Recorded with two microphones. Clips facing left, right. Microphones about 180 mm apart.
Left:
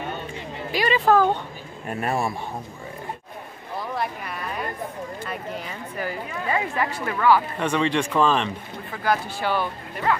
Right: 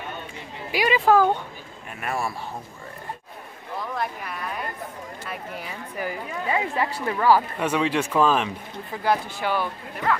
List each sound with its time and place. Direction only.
0.7 s a woman's voice: 10° right (ahead or behind)
1.9 s a man's voice: 35° left (ahead or behind)
3.9 s a sound: centre (ahead or behind)
5.2 s a woman's voice: 5° right (ahead or behind)
6.9 s speech: 35° right (ahead or behind)
7.5 s a woman's voice: 5° right (ahead or behind)